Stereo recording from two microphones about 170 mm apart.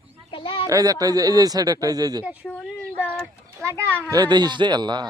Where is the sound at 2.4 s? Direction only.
10° left (ahead or behind).